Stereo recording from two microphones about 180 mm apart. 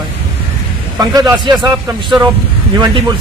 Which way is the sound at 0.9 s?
20° right (ahead or behind).